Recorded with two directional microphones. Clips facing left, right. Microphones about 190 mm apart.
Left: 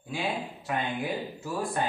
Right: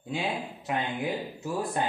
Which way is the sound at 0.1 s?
20° right (ahead or behind).